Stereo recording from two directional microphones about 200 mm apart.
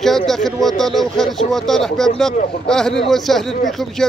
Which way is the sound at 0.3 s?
Centre (ahead or behind).